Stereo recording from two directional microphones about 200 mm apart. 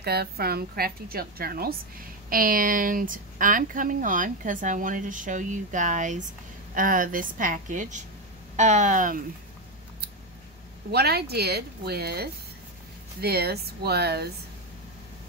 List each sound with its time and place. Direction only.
0.0 s a woman's voice: 50° right (ahead or behind)
10.9 s a woman's voice: 50° right (ahead or behind)